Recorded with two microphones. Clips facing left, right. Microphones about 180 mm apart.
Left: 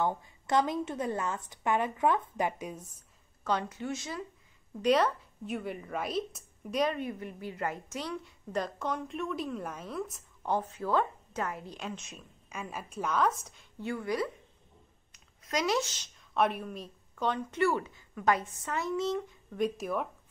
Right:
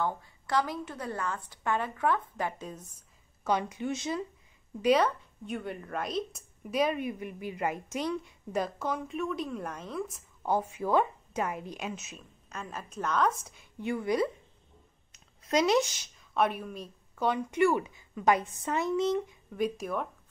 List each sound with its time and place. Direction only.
0.0 s a woman's voice: 20° left (ahead or behind)
3.4 s a woman's voice: 15° right (ahead or behind)
4.8 s a woman's voice: centre (ahead or behind)
12.4 s a woman's voice: 10° left (ahead or behind)
13.7 s a woman's voice: 15° right (ahead or behind)
15.1 s a sound: 25° right (ahead or behind)
16.2 s a woman's voice: centre (ahead or behind)
17.3 s a woman's voice: 15° right (ahead or behind)
19.5 s a woman's voice: centre (ahead or behind)